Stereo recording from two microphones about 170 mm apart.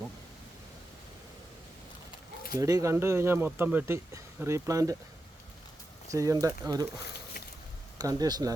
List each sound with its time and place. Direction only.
2.6 s speech: 20° right (ahead or behind)
6.1 s speech: 20° right (ahead or behind)
7.9 s speech: 25° right (ahead or behind)